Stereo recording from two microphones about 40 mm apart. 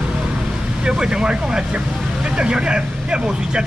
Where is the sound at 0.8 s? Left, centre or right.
Right.